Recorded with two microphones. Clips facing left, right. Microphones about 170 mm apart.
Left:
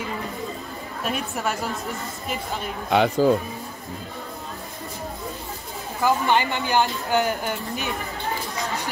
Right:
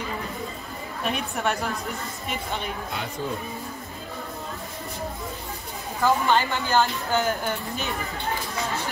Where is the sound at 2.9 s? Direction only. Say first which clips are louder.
Left 17 dB; 90° left.